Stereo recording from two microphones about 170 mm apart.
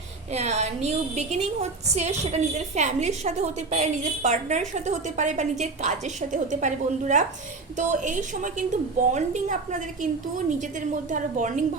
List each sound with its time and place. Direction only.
0.3 s a woman's voice: 40° right (ahead or behind)